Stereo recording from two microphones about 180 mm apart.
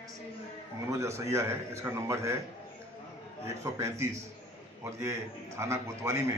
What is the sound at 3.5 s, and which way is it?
A man's voice, 15° right (ahead or behind).